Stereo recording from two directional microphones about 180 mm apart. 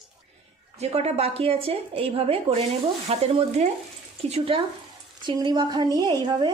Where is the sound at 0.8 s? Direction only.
35° right (ahead or behind).